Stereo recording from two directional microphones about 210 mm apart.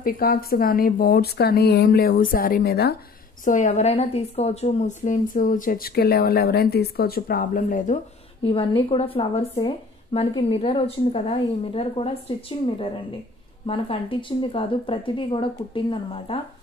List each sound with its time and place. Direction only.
0.0 s speech: 45° left (ahead or behind)
3.4 s a woman's voice: 35° left (ahead or behind)
8.5 s speech: 25° left (ahead or behind)